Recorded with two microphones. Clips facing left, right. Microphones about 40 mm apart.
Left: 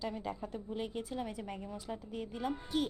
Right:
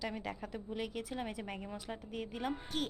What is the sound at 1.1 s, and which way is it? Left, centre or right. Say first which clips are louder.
Speech: left 1 dB; right.